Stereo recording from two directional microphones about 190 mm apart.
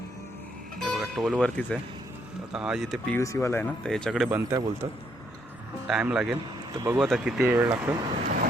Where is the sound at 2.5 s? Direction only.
5° right (ahead or behind).